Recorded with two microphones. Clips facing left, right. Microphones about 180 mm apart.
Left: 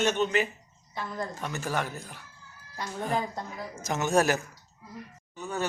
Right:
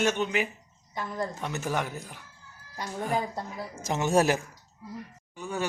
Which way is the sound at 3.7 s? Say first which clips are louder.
Right 1 dB; 30° right (ahead or behind).